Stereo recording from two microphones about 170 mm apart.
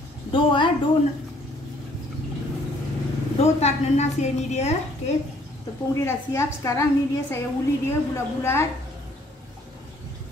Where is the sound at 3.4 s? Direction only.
40° left (ahead or behind).